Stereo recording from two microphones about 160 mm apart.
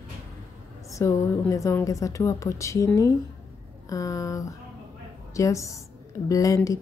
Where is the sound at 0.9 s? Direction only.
20° left (ahead or behind).